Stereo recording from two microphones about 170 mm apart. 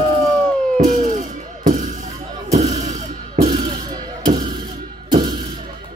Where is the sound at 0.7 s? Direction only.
50° right (ahead or behind).